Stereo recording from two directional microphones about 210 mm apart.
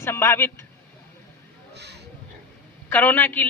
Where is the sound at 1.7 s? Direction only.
50° right (ahead or behind).